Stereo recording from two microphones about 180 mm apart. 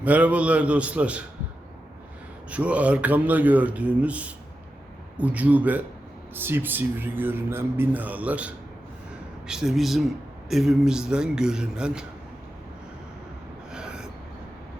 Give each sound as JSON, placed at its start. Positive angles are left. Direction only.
{"t": 0.0, "sound": "speech", "side_deg": -10}
{"t": 2.5, "sound": "a man's voice", "side_deg": -5}
{"t": 13.7, "sound": "a sound", "side_deg": -5}